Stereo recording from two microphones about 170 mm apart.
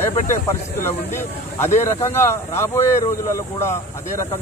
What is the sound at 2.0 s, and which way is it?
Speech, 15° left (ahead or behind).